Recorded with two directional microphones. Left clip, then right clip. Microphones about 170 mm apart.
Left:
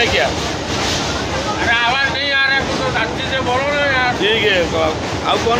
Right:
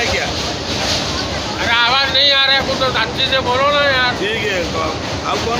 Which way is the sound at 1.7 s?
20° right (ahead or behind).